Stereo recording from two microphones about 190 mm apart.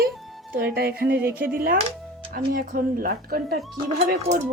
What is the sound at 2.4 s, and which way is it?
Speech, 50° right (ahead or behind).